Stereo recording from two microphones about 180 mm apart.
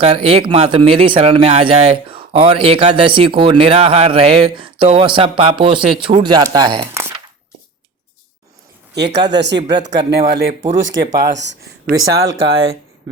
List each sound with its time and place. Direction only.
0.0 s speech: 30° right (ahead or behind)
9.0 s speech: 70° right (ahead or behind)
10.8 s speech: 90° right
11.3 s speech: 75° right (ahead or behind)